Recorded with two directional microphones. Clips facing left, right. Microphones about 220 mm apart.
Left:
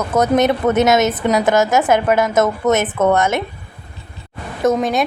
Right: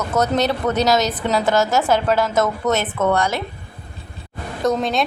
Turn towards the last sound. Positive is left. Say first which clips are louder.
# left 3 dB
turn(degrees=0)  # may be behind; listen again after turning